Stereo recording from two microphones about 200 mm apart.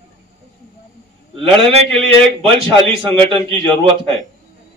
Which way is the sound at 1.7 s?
25° right (ahead or behind).